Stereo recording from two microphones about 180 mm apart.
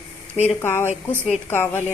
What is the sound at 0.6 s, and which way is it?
Speech, 15° left (ahead or behind).